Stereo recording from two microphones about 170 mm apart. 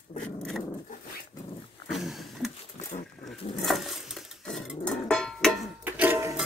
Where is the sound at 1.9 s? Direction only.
Centre (ahead or behind).